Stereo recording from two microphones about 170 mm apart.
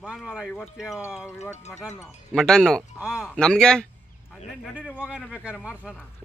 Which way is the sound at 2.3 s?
5° left (ahead or behind).